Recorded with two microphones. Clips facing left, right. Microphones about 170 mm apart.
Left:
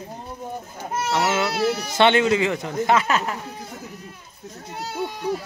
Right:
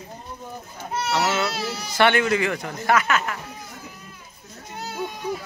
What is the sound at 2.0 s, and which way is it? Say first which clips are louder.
Speech: left 2 dB; 20° left (ahead or behind).